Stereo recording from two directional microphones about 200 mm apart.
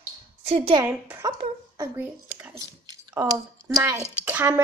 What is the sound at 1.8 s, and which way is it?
A child's voice, 10° right (ahead or behind).